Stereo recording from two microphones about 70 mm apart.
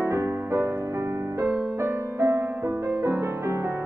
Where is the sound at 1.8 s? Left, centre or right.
Right.